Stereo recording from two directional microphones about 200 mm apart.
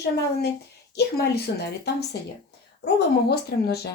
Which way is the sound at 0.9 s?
55° left (ahead or behind).